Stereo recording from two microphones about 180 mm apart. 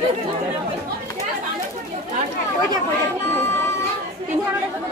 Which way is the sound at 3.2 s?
15° left (ahead or behind).